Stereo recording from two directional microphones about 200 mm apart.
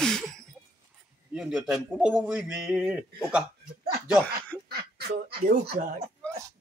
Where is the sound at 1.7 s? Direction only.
5° right (ahead or behind).